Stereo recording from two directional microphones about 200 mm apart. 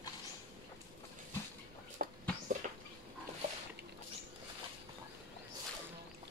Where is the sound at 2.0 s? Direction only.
45° right (ahead or behind).